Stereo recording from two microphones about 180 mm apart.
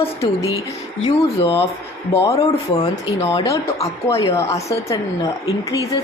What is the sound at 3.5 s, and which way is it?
A woman's voice, 15° left (ahead or behind).